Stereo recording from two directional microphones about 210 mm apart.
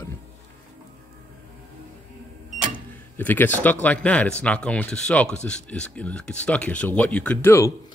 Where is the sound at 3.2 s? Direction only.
10° left (ahead or behind).